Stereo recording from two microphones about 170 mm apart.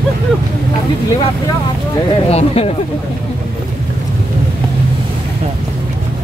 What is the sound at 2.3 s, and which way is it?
Speech, 35° left (ahead or behind).